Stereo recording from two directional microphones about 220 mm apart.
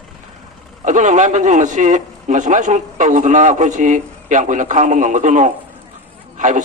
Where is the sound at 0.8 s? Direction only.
35° right (ahead or behind).